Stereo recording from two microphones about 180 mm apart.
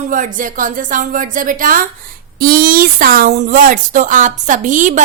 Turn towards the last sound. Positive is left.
turn(degrees=-45)  # may be behind; listen again after turning